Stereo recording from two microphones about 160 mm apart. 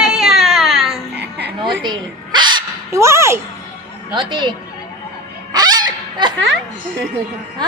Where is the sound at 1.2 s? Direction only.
90° right.